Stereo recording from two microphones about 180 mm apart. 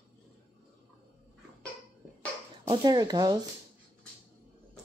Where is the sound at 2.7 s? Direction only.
20° right (ahead or behind).